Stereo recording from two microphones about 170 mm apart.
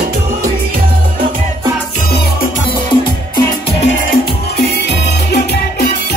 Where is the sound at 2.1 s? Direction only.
60° left (ahead or behind).